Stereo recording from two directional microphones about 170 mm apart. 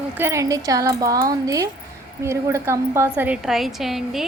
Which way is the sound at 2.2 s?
15° right (ahead or behind).